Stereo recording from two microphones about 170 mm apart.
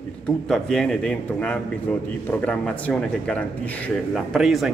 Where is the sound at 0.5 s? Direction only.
Centre (ahead or behind).